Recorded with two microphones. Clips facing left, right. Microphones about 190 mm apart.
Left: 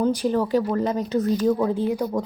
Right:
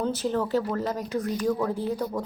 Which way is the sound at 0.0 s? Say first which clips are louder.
Left 5 dB; 15° left (ahead or behind).